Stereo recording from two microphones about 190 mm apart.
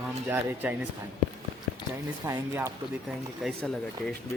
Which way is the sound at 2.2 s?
15° right (ahead or behind).